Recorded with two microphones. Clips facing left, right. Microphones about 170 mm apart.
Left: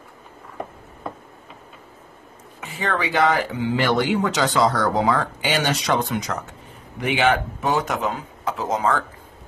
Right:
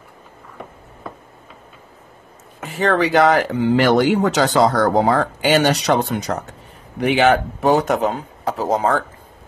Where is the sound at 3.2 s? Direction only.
45° right (ahead or behind).